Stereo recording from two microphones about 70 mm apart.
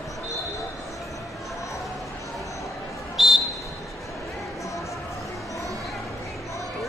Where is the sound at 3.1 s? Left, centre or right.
Centre.